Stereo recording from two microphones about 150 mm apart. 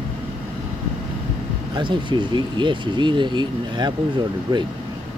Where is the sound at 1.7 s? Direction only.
30° right (ahead or behind).